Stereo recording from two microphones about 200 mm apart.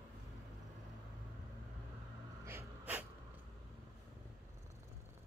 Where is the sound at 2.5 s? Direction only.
10° right (ahead or behind).